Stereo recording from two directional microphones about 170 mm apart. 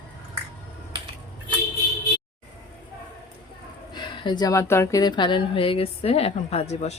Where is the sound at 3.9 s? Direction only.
25° left (ahead or behind).